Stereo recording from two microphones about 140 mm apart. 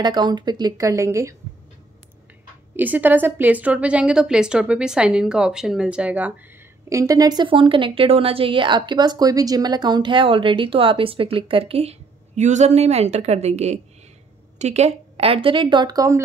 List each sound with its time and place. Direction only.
0.0 s speech: 30° right (ahead or behind)
2.7 s a woman's voice: 15° right (ahead or behind)
6.9 s a woman's voice: 25° right (ahead or behind)